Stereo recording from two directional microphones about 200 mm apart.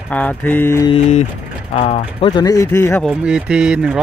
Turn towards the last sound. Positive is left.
turn(degrees=-5)  # may be behind; listen again after turning